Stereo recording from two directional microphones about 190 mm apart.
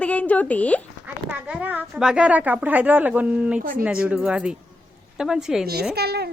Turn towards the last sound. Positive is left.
turn(degrees=-55)  # may be behind; listen again after turning